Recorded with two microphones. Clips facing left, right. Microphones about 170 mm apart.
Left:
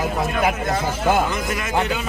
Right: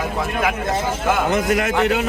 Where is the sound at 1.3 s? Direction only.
65° right (ahead or behind).